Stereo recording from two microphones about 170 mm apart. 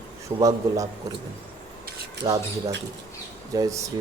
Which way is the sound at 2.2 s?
20° right (ahead or behind).